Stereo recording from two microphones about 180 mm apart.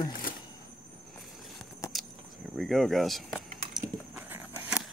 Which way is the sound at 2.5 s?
Centre (ahead or behind).